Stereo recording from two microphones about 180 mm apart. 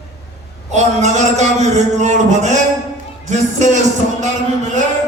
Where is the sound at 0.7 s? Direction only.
40° right (ahead or behind).